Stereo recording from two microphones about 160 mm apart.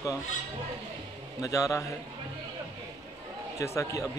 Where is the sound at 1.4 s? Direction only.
20° left (ahead or behind).